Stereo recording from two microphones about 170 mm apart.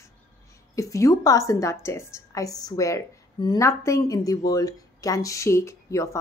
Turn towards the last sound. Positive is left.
turn(degrees=20)  # may be behind; listen again after turning